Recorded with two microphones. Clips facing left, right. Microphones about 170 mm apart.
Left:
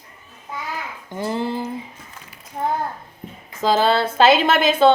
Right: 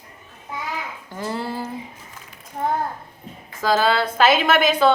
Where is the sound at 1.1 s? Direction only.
20° left (ahead or behind).